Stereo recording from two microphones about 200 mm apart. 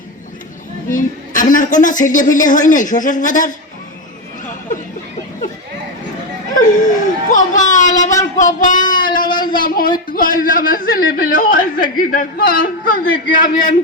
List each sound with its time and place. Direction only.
0.9 s a woman's voice: 40° left (ahead or behind)
6.5 s laughter: 40° left (ahead or behind)
7.3 s a man's voice: 40° left (ahead or behind)
8.9 s child singing: 45° left (ahead or behind)
9.6 s a sound: 45° left (ahead or behind)
10.1 s speech: 45° left (ahead or behind)